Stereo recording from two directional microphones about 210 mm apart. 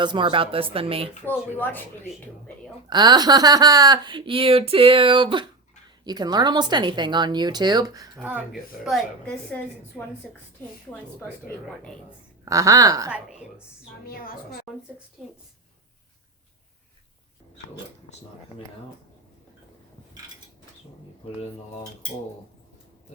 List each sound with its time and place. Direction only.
0.0 s speech: 20° right (ahead or behind)
1.2 s speech: 10° left (ahead or behind)
2.9 s speech: 20° right (ahead or behind)
8.2 s speech: 5° right (ahead or behind)
10.6 s speech: 10° left (ahead or behind)
12.5 s a woman's voice: 15° right (ahead or behind)
14.0 s a woman's voice: 45° left (ahead or behind)